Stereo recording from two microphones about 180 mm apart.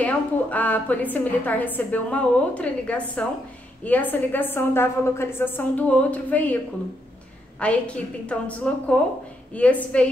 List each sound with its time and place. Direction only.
0.0 s a woman's voice: 10° left (ahead or behind)